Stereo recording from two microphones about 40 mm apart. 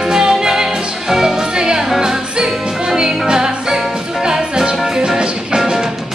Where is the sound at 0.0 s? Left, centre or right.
Centre.